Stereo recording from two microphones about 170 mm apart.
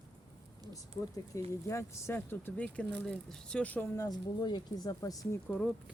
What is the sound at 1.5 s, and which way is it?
Speech, 15° left (ahead or behind).